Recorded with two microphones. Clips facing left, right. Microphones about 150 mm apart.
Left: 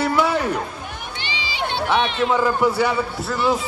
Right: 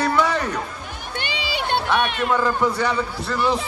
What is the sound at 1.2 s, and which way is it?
Run, 60° right (ahead or behind).